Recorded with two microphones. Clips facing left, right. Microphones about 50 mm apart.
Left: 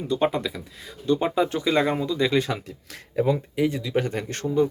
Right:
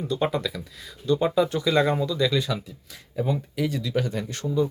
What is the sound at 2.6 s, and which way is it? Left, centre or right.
Speech, left.